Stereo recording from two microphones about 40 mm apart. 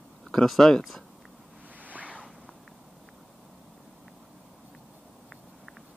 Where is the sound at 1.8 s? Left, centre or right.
Right.